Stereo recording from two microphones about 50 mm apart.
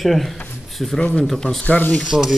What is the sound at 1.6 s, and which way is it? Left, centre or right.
Speech, left.